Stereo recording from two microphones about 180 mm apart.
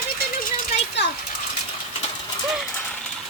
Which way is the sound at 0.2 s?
55° left (ahead or behind).